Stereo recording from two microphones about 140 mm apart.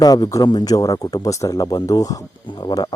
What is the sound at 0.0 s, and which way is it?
Speech, 25° left (ahead or behind).